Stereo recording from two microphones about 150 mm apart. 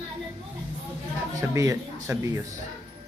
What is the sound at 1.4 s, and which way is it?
Speech, 20° right (ahead or behind).